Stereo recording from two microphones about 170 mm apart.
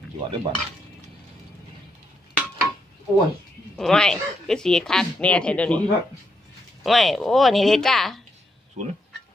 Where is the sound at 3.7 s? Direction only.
5° left (ahead or behind).